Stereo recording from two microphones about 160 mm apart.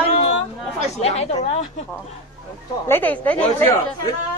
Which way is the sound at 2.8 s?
10° left (ahead or behind).